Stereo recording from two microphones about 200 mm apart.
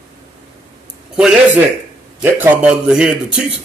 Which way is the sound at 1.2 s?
5° right (ahead or behind).